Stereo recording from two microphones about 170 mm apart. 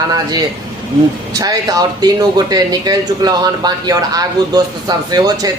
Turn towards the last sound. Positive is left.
turn(degrees=-25)  # may be behind; listen again after turning